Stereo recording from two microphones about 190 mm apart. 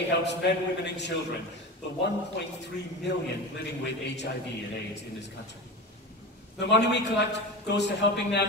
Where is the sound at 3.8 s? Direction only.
65° left (ahead or behind).